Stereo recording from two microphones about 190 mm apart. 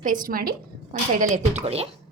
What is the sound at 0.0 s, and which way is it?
Speech, 45° right (ahead or behind).